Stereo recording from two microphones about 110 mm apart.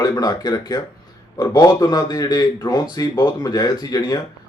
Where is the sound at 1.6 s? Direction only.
30° left (ahead or behind).